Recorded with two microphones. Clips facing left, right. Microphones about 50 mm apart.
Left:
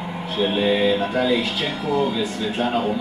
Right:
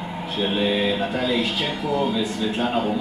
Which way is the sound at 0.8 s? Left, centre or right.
Centre.